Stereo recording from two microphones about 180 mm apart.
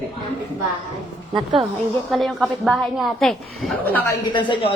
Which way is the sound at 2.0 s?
Centre (ahead or behind).